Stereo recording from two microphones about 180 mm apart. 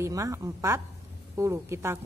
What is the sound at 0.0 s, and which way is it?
A woman's voice, 15° right (ahead or behind).